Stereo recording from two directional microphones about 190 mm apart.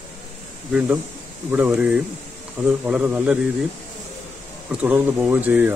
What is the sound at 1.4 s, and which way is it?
Speech, 5° right (ahead or behind).